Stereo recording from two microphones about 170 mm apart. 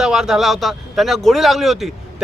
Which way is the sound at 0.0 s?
5° right (ahead or behind).